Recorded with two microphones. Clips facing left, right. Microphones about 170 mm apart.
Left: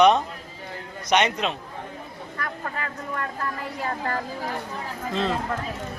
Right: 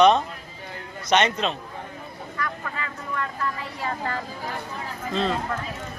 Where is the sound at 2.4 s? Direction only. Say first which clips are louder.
Even; 45° left (ahead or behind).